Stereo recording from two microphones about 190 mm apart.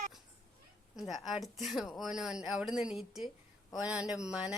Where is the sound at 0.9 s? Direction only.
Centre (ahead or behind).